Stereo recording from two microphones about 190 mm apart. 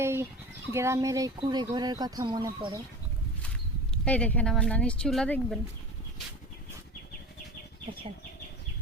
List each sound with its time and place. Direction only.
0.0 s a sound: 15° right (ahead or behind)
0.7 s speech: 15° right (ahead or behind)
3.9 s speech: 5° left (ahead or behind)